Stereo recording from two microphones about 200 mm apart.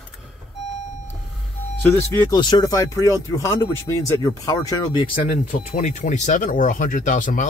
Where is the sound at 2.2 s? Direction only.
20° left (ahead or behind).